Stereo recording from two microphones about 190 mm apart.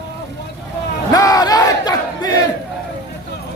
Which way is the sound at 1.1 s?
20° left (ahead or behind).